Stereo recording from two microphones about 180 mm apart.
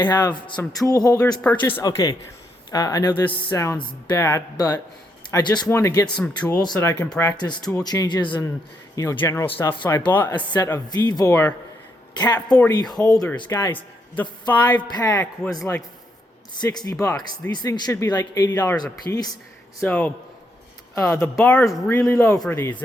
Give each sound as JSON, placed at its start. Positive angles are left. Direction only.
{"t": 0.3, "sound": "speech", "side_deg": 25}
{"t": 4.2, "sound": "speech", "side_deg": 10}
{"t": 7.3, "sound": "speech", "side_deg": 25}
{"t": 12.5, "sound": "speech", "side_deg": 10}
{"t": 12.7, "sound": "speech", "side_deg": 20}
{"t": 14.8, "sound": "speech", "side_deg": 20}
{"t": 16.7, "sound": "speech", "side_deg": 20}
{"t": 19.8, "sound": "speech", "side_deg": 10}